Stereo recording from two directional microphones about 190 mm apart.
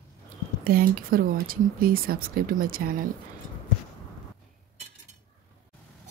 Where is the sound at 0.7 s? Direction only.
50° right (ahead or behind).